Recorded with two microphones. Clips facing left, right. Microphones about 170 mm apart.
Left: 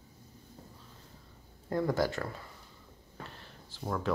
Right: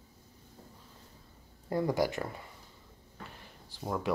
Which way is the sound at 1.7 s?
15° right (ahead or behind).